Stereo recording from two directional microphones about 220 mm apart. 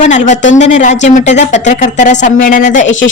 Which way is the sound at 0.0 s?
35° left (ahead or behind).